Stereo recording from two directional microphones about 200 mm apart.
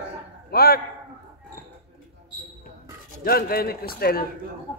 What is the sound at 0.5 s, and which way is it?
Speech, 50° left (ahead or behind).